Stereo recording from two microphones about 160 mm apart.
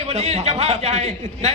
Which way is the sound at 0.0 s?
40° right (ahead or behind).